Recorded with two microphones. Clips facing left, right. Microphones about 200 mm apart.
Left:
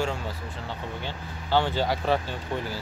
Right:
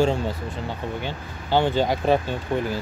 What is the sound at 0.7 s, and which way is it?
Speech, 15° right (ahead or behind).